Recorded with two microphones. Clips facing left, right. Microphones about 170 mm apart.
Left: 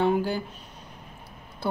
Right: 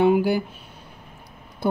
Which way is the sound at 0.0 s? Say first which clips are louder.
Right 6 dB; 10° right (ahead or behind).